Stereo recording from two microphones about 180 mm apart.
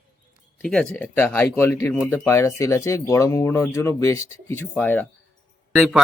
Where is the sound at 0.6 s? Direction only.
5° left (ahead or behind).